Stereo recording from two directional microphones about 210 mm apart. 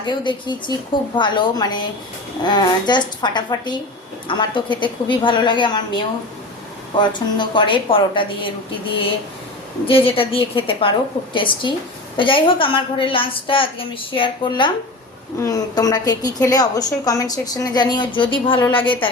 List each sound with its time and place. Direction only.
0.0 s a woman's voice: 20° left (ahead or behind)
7.0 s a woman's voice: 20° left (ahead or behind)
9.8 s a woman's voice: 25° left (ahead or behind)